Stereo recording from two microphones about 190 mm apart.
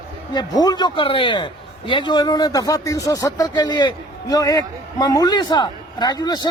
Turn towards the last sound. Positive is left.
turn(degrees=20)  # may be behind; listen again after turning